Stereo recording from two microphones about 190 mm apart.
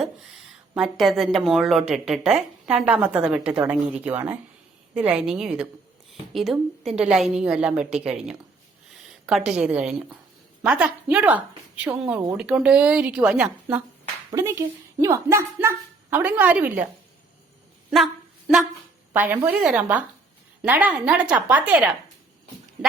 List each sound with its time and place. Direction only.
0.7 s a woman's voice: centre (ahead or behind)
19.1 s speech: 10° right (ahead or behind)